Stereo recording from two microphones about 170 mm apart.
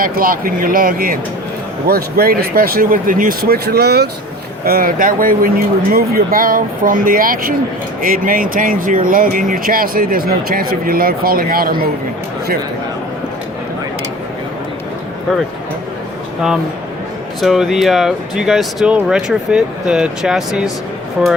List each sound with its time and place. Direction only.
0.0 s speech: 55° right (ahead or behind)
4.6 s speech: 60° right (ahead or behind)
17.4 s speech: centre (ahead or behind)